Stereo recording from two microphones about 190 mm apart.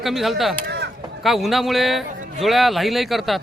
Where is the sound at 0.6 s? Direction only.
60° right (ahead or behind).